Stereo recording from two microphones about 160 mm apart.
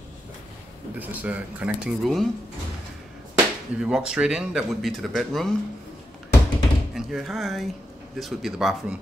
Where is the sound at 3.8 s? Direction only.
5° right (ahead or behind).